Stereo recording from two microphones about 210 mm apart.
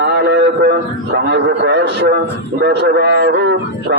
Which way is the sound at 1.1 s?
55° right (ahead or behind).